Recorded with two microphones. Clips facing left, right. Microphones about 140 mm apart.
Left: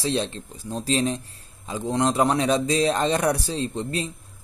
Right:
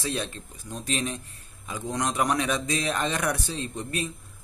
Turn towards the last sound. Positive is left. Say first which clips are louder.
# left 5 dB
turn(degrees=30)  # may be behind; listen again after turning